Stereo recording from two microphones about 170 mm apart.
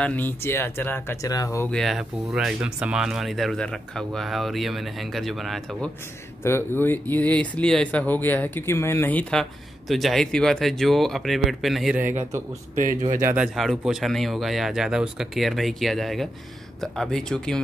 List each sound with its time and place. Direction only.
0.0 s speech: 10° left (ahead or behind)
1.7 s speech: centre (ahead or behind)
6.4 s speech: 15° left (ahead or behind)
12.7 s speech: 50° right (ahead or behind)
13.1 s speech: 15° right (ahead or behind)
13.6 s speech: centre (ahead or behind)